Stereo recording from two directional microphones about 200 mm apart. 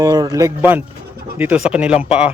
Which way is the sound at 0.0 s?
20° right (ahead or behind).